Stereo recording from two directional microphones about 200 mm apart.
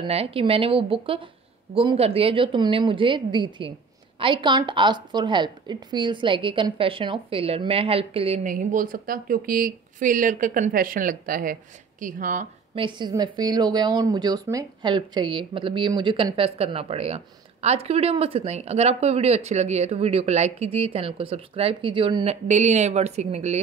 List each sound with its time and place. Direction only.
0.0 s a woman's voice: 30° right (ahead or behind)
8.5 s speech: 45° right (ahead or behind)
12.7 s a woman's voice: 25° right (ahead or behind)